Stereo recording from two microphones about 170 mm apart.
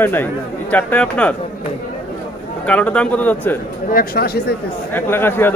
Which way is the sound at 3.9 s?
60° left (ahead or behind).